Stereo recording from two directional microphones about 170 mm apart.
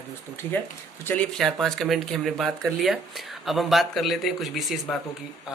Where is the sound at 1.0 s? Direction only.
10° left (ahead or behind).